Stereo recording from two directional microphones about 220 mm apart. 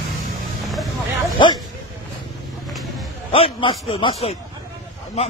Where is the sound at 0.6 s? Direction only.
Centre (ahead or behind).